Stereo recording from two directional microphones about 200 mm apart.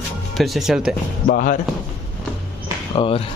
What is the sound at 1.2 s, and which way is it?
Speech, 45° left (ahead or behind).